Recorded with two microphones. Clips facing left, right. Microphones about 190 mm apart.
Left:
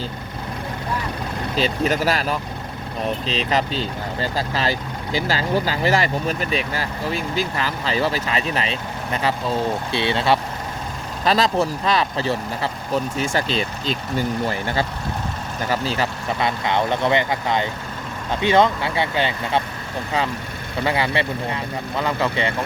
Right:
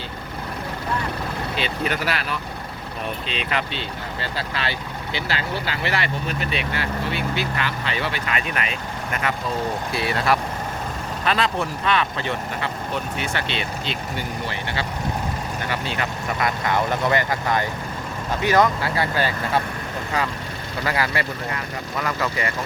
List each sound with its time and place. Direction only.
1.5 s speech: 40° left (ahead or behind)
11.3 s speech: 40° left (ahead or behind)
16.4 s speech: 25° left (ahead or behind)
20.8 s speech: 25° left (ahead or behind)